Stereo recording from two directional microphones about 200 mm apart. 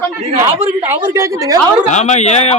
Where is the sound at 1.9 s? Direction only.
35° left (ahead or behind).